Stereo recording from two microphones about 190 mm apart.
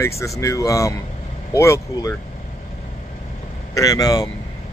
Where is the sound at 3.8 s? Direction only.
20° left (ahead or behind).